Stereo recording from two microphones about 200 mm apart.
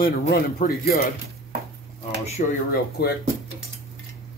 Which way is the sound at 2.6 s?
55° left (ahead or behind).